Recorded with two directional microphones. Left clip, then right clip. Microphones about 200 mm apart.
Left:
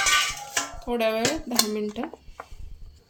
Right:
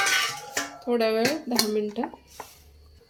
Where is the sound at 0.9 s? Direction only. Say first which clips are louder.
Right 2 dB; 20° left (ahead or behind).